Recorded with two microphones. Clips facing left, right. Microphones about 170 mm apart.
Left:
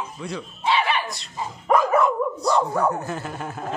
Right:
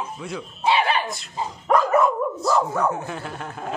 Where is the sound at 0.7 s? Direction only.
35° right (ahead or behind).